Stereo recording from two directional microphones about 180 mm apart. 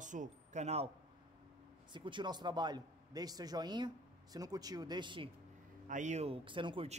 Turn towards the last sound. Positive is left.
turn(degrees=-30)  # may be behind; listen again after turning